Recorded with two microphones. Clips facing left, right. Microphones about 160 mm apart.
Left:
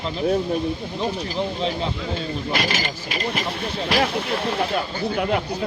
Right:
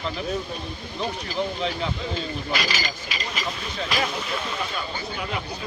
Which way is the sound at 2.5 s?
55° left (ahead or behind).